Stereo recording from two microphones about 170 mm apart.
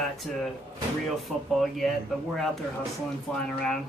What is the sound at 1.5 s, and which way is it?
Speech, centre (ahead or behind).